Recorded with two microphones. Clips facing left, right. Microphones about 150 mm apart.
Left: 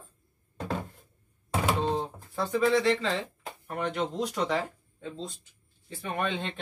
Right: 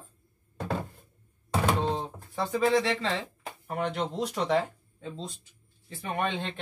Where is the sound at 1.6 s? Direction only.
Centre (ahead or behind).